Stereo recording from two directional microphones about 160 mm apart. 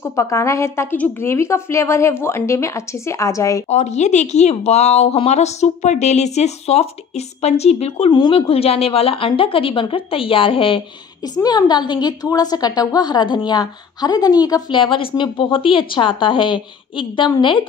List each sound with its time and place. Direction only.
0.0 s a woman's voice: 20° left (ahead or behind)
3.6 s a woman's voice: 45° left (ahead or behind)